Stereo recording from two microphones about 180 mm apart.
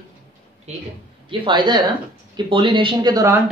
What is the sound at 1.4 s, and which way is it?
Speech, 25° right (ahead or behind).